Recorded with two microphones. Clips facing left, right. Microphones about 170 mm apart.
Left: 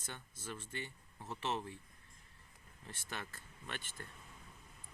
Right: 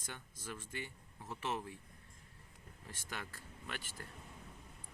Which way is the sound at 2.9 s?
10° right (ahead or behind).